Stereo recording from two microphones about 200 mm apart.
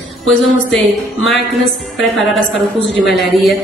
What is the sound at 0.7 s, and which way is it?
A woman's voice, centre (ahead or behind).